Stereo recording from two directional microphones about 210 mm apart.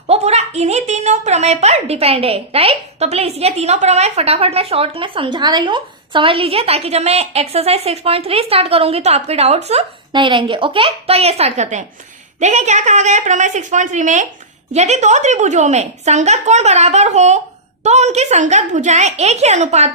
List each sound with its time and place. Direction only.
0.1 s a woman's voice: 30° right (ahead or behind)